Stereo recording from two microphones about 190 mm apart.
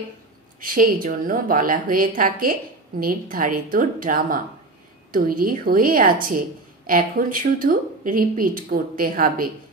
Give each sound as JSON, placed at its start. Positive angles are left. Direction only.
{"t": 0.6, "sound": "speech", "side_deg": -45}